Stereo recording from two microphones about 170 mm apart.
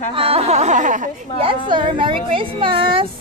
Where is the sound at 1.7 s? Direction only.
30° right (ahead or behind).